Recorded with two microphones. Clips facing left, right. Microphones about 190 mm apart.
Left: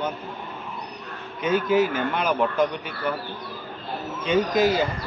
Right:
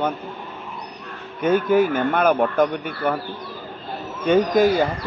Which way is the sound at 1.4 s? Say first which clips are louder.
Right 4 dB; 55° right (ahead or behind).